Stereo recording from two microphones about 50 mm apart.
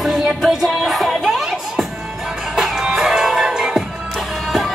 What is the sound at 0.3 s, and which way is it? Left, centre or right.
Music, centre.